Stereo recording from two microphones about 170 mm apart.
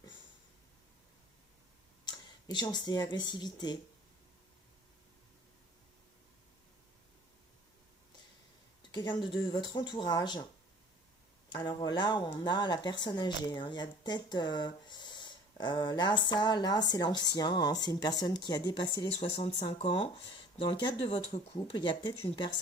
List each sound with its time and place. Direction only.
2.0 s speech: 25° left (ahead or behind)
8.9 s speech: 25° left (ahead or behind)
11.4 s speech: 25° left (ahead or behind)